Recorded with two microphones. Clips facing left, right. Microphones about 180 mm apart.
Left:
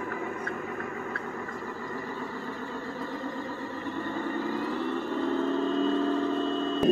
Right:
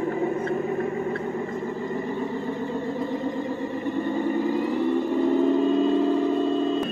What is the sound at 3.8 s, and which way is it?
Vehicle, 15° right (ahead or behind).